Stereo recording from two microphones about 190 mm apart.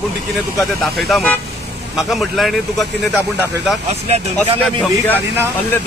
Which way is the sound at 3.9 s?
35° right (ahead or behind).